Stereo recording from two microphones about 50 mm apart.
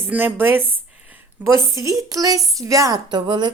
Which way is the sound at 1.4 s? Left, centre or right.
Right.